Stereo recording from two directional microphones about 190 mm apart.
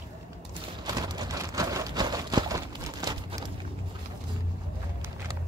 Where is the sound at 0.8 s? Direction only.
20° right (ahead or behind).